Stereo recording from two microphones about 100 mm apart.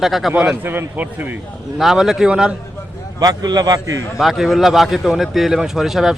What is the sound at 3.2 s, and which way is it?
Speech, 40° right (ahead or behind).